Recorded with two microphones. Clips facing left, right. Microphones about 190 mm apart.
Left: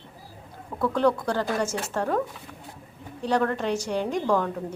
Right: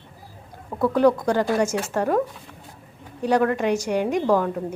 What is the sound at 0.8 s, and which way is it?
A woman's voice, 10° right (ahead or behind).